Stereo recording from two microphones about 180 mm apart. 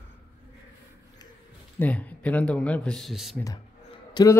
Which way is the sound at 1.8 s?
10° left (ahead or behind).